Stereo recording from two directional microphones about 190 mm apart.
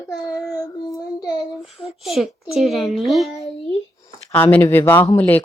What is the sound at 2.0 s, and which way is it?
Speech, centre (ahead or behind).